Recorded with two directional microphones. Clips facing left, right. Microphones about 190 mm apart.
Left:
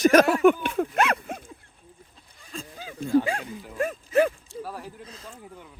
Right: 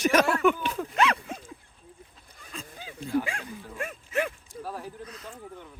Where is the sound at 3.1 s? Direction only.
35° left (ahead or behind).